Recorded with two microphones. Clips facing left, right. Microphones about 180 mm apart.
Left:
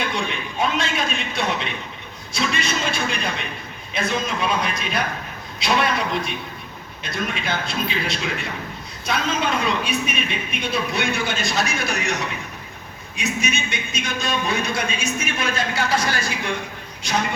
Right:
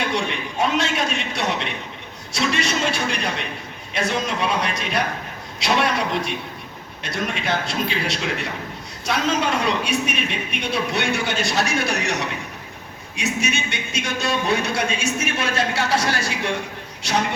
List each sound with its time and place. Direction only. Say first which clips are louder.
0.1 s a man's voice: right 2 dB; 75° right (ahead or behind)
13.1 s a man's voice: right 1 dB; 75° right (ahead or behind)